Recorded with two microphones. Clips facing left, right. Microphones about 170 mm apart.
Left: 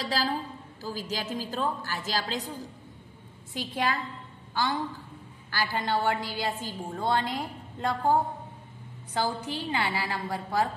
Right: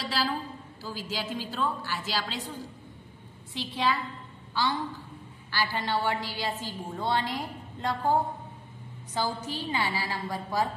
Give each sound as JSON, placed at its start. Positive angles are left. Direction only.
{"t": 0.1, "sound": "a woman's voice", "side_deg": 40}
{"t": 3.5, "sound": "a woman's voice", "side_deg": 45}
{"t": 5.5, "sound": "a woman's voice", "side_deg": 50}